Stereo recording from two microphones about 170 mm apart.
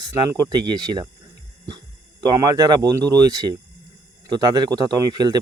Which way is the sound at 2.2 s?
20° right (ahead or behind).